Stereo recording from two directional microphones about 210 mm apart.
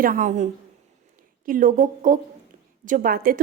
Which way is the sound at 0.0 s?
40° right (ahead or behind).